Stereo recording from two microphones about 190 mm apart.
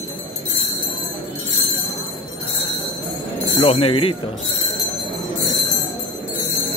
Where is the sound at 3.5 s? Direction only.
30° left (ahead or behind).